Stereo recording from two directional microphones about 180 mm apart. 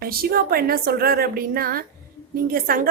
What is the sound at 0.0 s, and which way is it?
A woman's voice, 55° right (ahead or behind).